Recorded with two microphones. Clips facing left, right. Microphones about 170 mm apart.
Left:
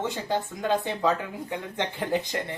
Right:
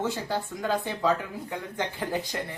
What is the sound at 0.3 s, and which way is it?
Speech, 20° left (ahead or behind).